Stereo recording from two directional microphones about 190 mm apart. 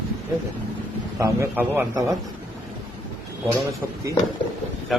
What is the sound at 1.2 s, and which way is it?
Speech, 10° right (ahead or behind).